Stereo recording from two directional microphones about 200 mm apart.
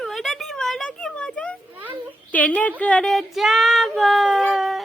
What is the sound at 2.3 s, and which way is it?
Female singing, 5° left (ahead or behind).